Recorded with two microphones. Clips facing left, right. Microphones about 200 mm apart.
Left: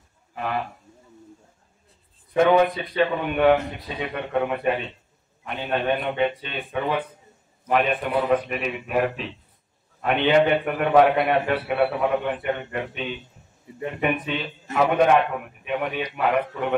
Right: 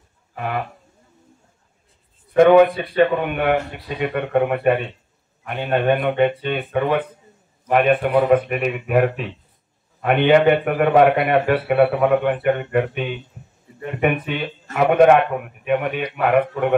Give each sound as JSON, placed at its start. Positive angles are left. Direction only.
{"t": 2.3, "sound": "a man's voice", "side_deg": -55}